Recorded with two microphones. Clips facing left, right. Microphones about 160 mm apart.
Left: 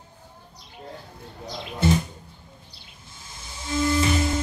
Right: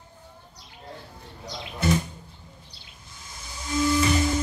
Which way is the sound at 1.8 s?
25° left (ahead or behind).